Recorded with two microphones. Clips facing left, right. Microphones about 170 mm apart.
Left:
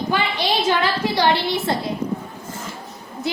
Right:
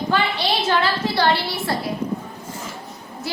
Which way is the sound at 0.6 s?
15° left (ahead or behind).